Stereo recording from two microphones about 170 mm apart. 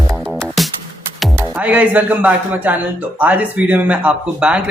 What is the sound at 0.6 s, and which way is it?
Music, centre (ahead or behind).